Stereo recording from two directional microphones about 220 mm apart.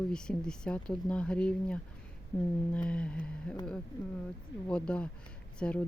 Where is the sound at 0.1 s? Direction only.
5° left (ahead or behind).